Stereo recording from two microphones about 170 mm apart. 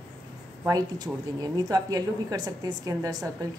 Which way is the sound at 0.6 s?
20° right (ahead or behind).